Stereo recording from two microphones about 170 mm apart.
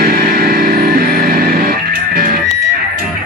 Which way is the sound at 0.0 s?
55° right (ahead or behind).